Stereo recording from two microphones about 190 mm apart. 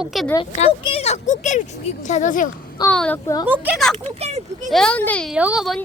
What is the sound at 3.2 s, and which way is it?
Speech, 20° left (ahead or behind).